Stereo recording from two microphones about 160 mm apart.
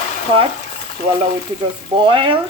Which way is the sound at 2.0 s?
30° right (ahead or behind).